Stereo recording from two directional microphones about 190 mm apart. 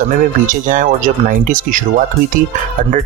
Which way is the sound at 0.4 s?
45° right (ahead or behind).